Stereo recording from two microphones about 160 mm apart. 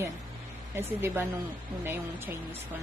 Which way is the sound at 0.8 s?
15° right (ahead or behind).